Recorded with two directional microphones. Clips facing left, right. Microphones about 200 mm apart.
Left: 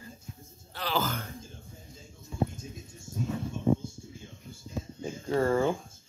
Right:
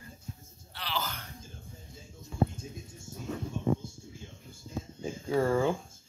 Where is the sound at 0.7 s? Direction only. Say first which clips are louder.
Left 6 dB; 50° left (ahead or behind).